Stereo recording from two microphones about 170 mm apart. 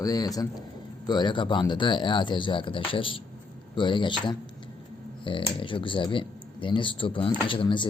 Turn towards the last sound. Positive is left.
turn(degrees=30)  # may be behind; listen again after turning